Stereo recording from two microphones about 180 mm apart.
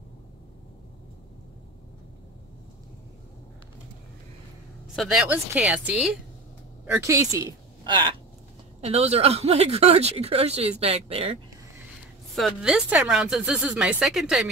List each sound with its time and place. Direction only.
4.9 s speech: centre (ahead or behind)
7.0 s a woman's voice: 20° right (ahead or behind)
8.8 s speech: 35° right (ahead or behind)
12.4 s speech: centre (ahead or behind)